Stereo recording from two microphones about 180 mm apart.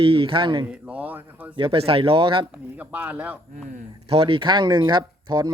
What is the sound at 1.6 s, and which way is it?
Speech, 30° right (ahead or behind).